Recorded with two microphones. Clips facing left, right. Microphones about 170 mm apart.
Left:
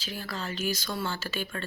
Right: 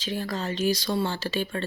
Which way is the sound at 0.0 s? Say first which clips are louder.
Right 6 dB; 35° right (ahead or behind).